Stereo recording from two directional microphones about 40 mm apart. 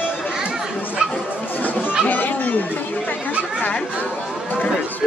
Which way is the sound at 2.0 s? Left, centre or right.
Left.